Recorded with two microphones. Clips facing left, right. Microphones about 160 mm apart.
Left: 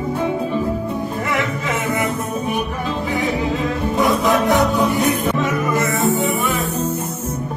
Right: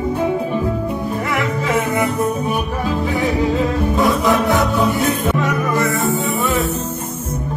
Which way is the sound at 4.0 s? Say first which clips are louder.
Even; 20° left (ahead or behind).